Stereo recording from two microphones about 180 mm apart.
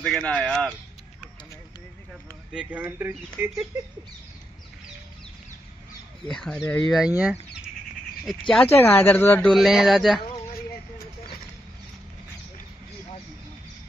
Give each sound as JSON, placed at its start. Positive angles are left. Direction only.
{"t": 0.0, "sound": "speech", "side_deg": 5}
{"t": 2.5, "sound": "speech", "side_deg": -5}
{"t": 6.2, "sound": "speech", "side_deg": 5}
{"t": 8.3, "sound": "speech", "side_deg": 0}
{"t": 8.6, "sound": "speech", "side_deg": 10}
{"t": 9.5, "sound": "speech", "side_deg": 0}
{"t": 10.2, "sound": "a sound", "side_deg": 30}